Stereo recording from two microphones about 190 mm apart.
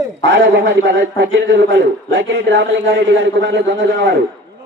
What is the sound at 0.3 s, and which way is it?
A man's voice, 80° right.